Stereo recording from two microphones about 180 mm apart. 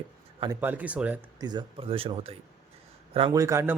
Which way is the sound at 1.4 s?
25° right (ahead or behind).